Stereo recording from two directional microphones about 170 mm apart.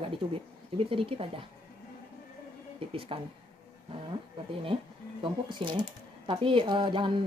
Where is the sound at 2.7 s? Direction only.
35° right (ahead or behind).